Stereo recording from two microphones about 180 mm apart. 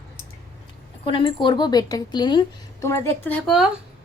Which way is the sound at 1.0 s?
30° left (ahead or behind).